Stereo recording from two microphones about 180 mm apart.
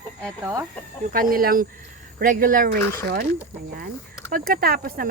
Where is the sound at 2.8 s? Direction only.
15° left (ahead or behind).